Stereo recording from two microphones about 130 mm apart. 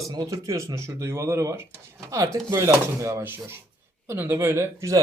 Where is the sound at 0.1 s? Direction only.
30° right (ahead or behind).